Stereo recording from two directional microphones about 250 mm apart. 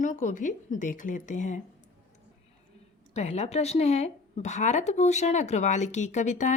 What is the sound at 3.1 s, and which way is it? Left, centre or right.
Speech, left.